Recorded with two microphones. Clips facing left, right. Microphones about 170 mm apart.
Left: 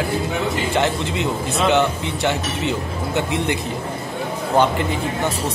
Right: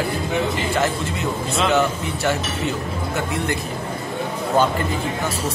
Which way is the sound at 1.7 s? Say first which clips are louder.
Left 2 dB; 20° left (ahead or behind).